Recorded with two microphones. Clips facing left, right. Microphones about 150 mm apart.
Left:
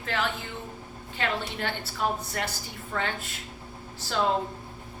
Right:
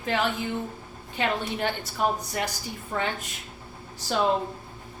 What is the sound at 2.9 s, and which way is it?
Speech, 15° right (ahead or behind).